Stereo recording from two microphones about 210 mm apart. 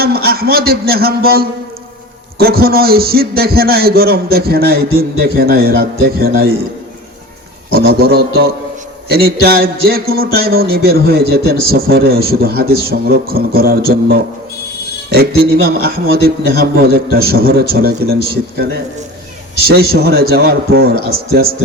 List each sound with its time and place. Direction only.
0.0 s a man's voice: 45° right (ahead or behind)
7.7 s a man's voice: 45° right (ahead or behind)